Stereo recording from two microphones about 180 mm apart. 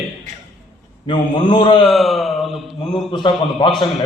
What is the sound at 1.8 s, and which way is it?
Speech, centre (ahead or behind).